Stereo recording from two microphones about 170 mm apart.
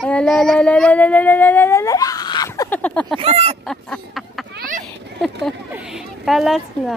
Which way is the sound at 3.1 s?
35° right (ahead or behind).